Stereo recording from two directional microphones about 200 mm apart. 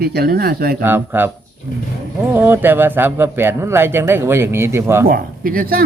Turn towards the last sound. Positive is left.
turn(degrees=-45)  # may be behind; listen again after turning